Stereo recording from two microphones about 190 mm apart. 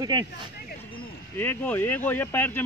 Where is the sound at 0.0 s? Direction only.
20° right (ahead or behind).